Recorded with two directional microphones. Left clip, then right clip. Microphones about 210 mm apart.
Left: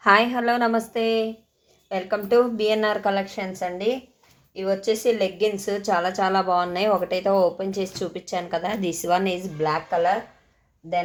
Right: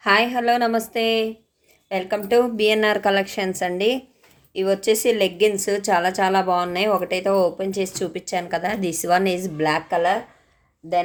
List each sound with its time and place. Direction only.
0.0 s a woman's voice: 10° right (ahead or behind); by 10.2 s 45° right (ahead or behind)